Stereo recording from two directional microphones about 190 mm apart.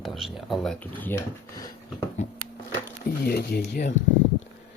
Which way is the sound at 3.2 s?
55° left (ahead or behind).